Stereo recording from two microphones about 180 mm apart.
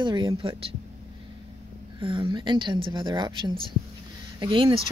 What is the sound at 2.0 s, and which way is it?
A woman's voice, 25° right (ahead or behind).